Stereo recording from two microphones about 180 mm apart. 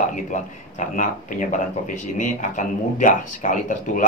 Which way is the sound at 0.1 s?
45° left (ahead or behind).